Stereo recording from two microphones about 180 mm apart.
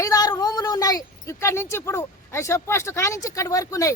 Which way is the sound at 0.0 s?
20° left (ahead or behind).